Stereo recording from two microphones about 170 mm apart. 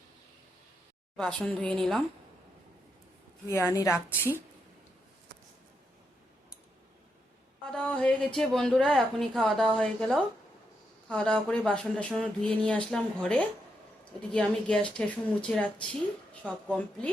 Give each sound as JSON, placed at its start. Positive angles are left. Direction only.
{"t": 1.1, "sound": "speech", "side_deg": 5}
{"t": 3.4, "sound": "speech", "side_deg": 15}
{"t": 7.7, "sound": "speech", "side_deg": 5}